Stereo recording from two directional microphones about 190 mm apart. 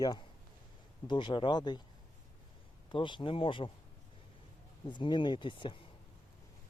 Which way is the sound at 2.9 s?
25° left (ahead or behind).